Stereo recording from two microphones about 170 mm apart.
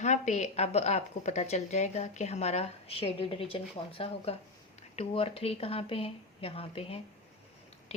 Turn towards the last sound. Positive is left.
turn(degrees=35)  # may be behind; listen again after turning